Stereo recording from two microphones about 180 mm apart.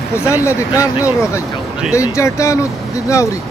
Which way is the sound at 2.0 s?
15° left (ahead or behind).